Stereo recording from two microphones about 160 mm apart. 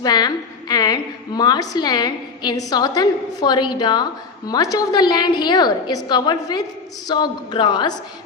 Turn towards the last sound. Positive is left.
turn(degrees=30)  # may be behind; listen again after turning